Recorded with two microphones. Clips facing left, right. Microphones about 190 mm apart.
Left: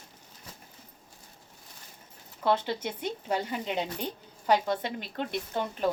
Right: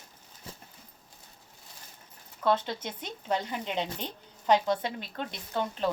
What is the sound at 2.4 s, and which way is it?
A woman's voice, 10° left (ahead or behind).